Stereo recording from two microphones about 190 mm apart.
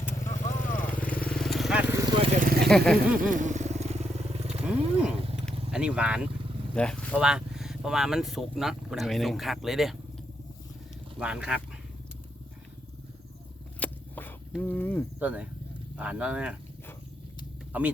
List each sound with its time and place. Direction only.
0.3 s vehicle: 40° left (ahead or behind)
0.9 s vehicle: 10° left (ahead or behind)
2.6 s speech: centre (ahead or behind)
3.2 s vehicle: 45° right (ahead or behind)
4.4 s wild animals: 5° right (ahead or behind)
5.7 s speech: 5° right (ahead or behind)
11.2 s speech: 5° right (ahead or behind)
13.7 s a sound: 10° left (ahead or behind)
14.6 s speech: 10° left (ahead or behind)
15.2 s speech: 5° right (ahead or behind)
17.7 s a sound: 10° right (ahead or behind)